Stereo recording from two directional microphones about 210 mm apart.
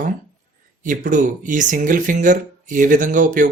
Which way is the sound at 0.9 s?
40° right (ahead or behind).